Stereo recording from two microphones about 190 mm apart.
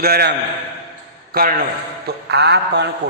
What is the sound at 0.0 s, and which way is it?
A man's voice, 55° right (ahead or behind).